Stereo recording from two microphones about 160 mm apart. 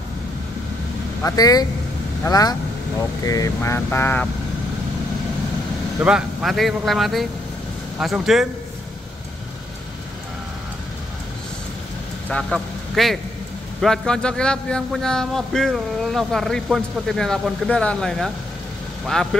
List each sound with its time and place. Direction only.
1.2 s speech: 25° left (ahead or behind)
5.9 s a man's voice: 5° right (ahead or behind)
12.3 s a man's voice: 5° left (ahead or behind)